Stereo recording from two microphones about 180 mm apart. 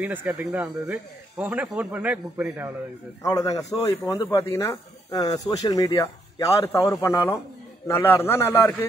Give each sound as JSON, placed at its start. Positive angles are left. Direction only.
{"t": 0.0, "sound": "a man's voice", "side_deg": -10}
{"t": 3.2, "sound": "a man's voice", "side_deg": 20}